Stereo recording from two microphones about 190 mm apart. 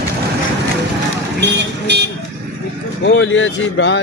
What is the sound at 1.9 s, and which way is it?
Speech, 65° right (ahead or behind).